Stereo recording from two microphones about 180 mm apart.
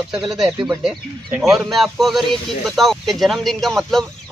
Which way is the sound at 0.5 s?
20° right (ahead or behind).